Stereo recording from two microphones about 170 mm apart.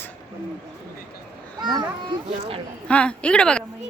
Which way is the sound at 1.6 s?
25° right (ahead or behind).